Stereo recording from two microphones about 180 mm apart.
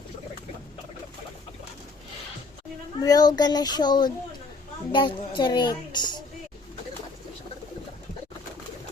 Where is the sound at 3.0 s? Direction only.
20° left (ahead or behind).